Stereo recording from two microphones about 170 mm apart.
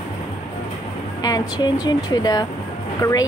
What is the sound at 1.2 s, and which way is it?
A woman's voice, 20° left (ahead or behind).